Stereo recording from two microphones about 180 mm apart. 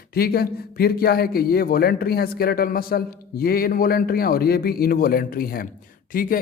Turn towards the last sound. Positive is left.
turn(degrees=50)  # may be behind; listen again after turning